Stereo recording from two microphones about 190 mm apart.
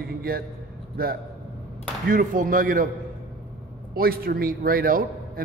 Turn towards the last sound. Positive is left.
turn(degrees=-50)  # may be behind; listen again after turning